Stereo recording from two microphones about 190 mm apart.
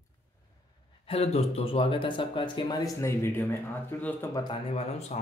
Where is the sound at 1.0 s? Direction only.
30° left (ahead or behind); by 4.1 s 15° left (ahead or behind).